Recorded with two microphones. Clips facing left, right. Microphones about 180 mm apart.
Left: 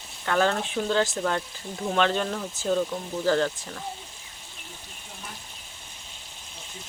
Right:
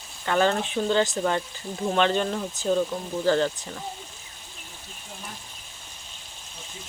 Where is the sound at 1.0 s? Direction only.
15° right (ahead or behind).